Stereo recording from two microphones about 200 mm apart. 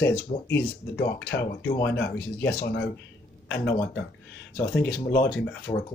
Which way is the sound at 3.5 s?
60° left (ahead or behind).